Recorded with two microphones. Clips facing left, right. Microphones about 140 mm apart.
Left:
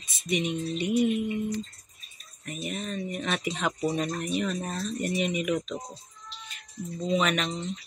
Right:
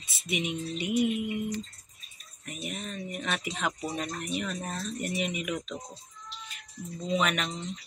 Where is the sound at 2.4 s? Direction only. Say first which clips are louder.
Left 4 dB; 5° right (ahead or behind).